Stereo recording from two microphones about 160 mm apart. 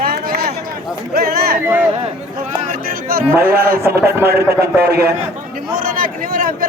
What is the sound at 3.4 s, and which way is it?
A man's voice, 70° right (ahead or behind).